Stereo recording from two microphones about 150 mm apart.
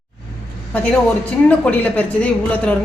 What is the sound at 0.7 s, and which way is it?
A woman's voice, 10° left (ahead or behind).